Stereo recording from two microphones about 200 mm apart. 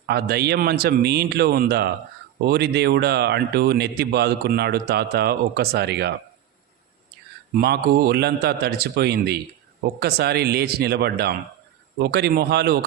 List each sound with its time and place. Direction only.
0.1 s speech: 55° right (ahead or behind)
7.6 s speech: 55° right (ahead or behind)